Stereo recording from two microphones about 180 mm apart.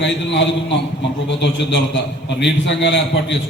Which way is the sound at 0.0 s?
80° left.